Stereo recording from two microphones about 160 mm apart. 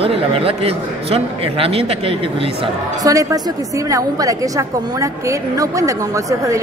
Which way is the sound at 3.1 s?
20° right (ahead or behind).